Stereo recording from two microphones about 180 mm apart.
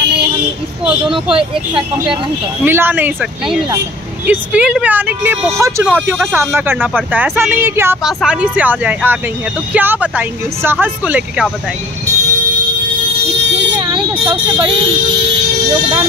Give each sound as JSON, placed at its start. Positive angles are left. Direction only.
{"t": 1.1, "sound": "speech", "side_deg": -30}
{"t": 2.6, "sound": "speech", "side_deg": -10}
{"t": 13.7, "sound": "vehicle", "side_deg": -25}